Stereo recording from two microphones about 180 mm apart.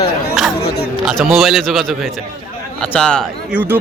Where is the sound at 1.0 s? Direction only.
Centre (ahead or behind).